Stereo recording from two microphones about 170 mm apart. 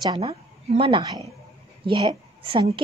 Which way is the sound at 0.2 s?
35° right (ahead or behind).